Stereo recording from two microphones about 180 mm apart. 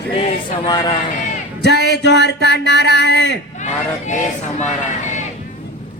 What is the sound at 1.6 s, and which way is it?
Speech, 70° left (ahead or behind).